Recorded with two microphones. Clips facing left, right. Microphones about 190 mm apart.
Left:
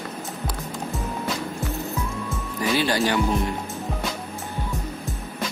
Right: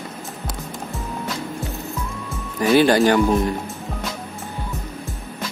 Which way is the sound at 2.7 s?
50° right (ahead or behind).